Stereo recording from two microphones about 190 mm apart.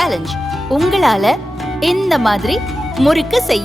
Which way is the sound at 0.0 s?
Centre (ahead or behind).